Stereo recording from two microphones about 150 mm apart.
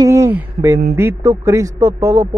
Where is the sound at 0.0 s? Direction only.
20° right (ahead or behind).